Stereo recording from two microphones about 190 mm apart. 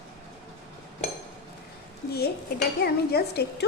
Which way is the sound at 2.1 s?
55° left (ahead or behind).